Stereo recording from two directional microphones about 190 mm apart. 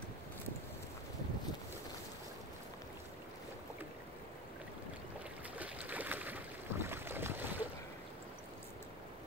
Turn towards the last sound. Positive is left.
turn(degrees=-10)  # may be behind; listen again after turning